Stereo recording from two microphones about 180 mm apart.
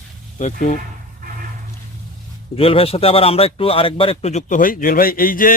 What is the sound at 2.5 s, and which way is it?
Speech, 30° left (ahead or behind).